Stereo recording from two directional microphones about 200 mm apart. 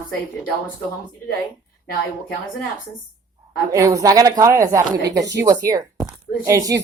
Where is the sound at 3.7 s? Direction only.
15° right (ahead or behind).